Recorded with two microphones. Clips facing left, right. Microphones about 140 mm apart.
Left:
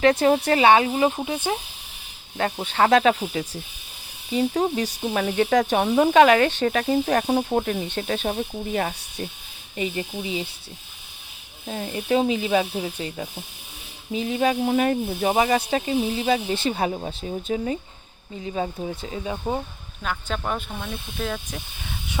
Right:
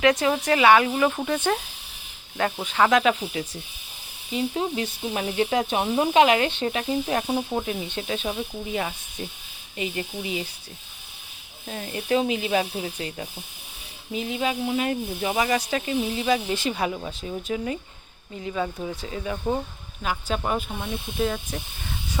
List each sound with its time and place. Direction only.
0.0 s speech: 30° left (ahead or behind); by 1.5 s 15° left (ahead or behind)
2.4 s speech: 30° left (ahead or behind)
9.7 s speech: 30° left (ahead or behind)
11.6 s speech: 25° left (ahead or behind)
14.1 s speech: 35° left (ahead or behind)
15.4 s speech: 30° left (ahead or behind)
20.0 s speech: 5° right (ahead or behind)